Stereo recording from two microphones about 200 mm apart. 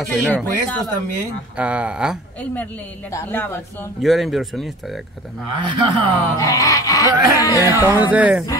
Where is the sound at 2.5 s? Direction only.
10° left (ahead or behind).